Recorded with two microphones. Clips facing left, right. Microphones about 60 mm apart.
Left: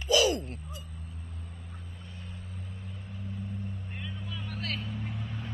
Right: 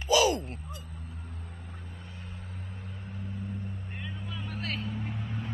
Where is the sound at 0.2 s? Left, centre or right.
Right.